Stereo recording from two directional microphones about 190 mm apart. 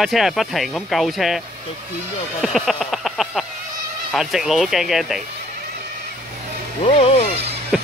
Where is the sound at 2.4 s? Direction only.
Centre (ahead or behind).